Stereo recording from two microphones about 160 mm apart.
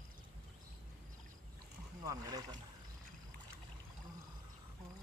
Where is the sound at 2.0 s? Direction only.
20° right (ahead or behind).